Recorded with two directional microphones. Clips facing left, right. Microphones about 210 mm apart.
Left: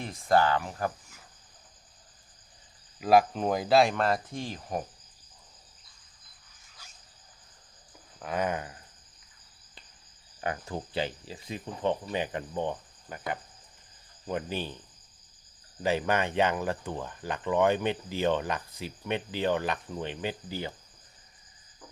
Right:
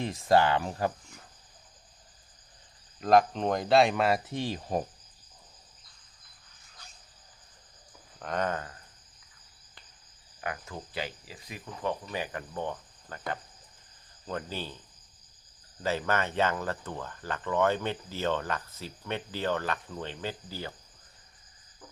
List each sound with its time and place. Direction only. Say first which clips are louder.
0.0 s speech: right 1 dB; 25° right (ahead or behind)
3.0 s speech: even; 5° left (ahead or behind)
4.3 s speech: right 3 dB; 25° right (ahead or behind)
6.8 s dog: right 2 dB; 10° left (ahead or behind)
8.2 s speech: left 1 dB; 10° left (ahead or behind)
10.4 s speech: left 4 dB; 30° left (ahead or behind)
15.8 s speech: left 2 dB; 15° left (ahead or behind)